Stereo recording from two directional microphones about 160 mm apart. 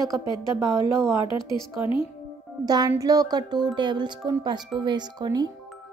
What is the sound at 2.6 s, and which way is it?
Speech, 25° right (ahead or behind).